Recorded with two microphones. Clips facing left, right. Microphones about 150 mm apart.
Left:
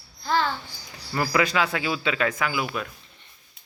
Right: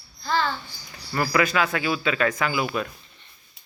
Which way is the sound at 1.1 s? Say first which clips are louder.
Right 1 dB; 20° left (ahead or behind).